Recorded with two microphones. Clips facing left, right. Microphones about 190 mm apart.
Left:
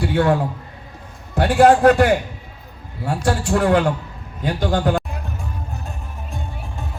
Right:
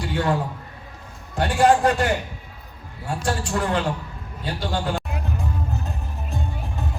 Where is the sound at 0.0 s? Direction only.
60° left (ahead or behind).